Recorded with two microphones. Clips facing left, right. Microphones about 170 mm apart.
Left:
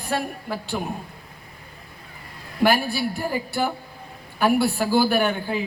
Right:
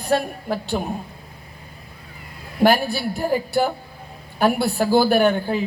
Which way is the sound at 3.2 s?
45° right (ahead or behind).